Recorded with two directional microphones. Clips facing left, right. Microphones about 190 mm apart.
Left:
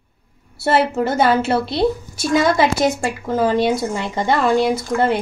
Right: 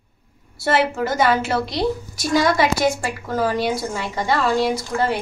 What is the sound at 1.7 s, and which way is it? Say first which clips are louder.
A woman's voice: left 4 dB; 25° left (ahead or behind).